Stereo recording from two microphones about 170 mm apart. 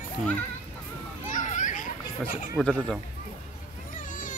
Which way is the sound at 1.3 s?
50° left (ahead or behind).